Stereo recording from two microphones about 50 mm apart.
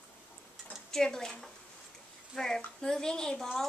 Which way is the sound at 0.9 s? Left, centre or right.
Centre.